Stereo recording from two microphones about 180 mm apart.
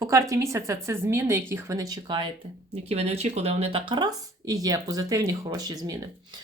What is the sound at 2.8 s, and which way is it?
Speech, 35° right (ahead or behind).